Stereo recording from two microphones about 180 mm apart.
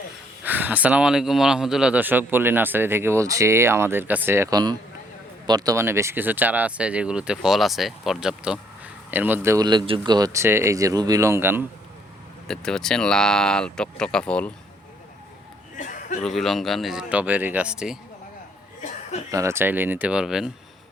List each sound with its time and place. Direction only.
0.4 s speech: 10° right (ahead or behind)
12.5 s speech: 5° left (ahead or behind)
15.8 s a sound: 45° left (ahead or behind)
16.2 s speech: centre (ahead or behind)
18.8 s chuckle: 40° left (ahead or behind)
19.3 s speech: 15° right (ahead or behind)